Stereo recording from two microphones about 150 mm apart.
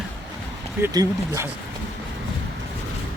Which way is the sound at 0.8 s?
20° right (ahead or behind).